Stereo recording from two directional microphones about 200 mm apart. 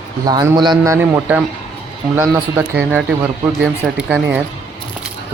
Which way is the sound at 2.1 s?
10° right (ahead or behind).